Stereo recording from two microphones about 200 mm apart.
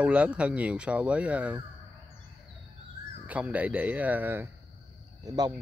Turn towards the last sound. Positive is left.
turn(degrees=-20)  # may be behind; listen again after turning